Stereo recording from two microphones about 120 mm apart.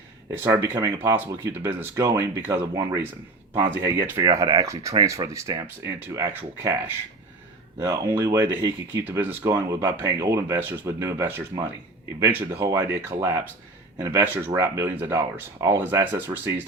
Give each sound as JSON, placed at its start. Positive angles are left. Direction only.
{"t": 0.3, "sound": "speech", "side_deg": -25}
{"t": 8.1, "sound": "speech", "side_deg": -25}